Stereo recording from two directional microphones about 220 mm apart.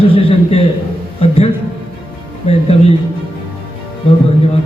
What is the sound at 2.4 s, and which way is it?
Speech, 25° left (ahead or behind).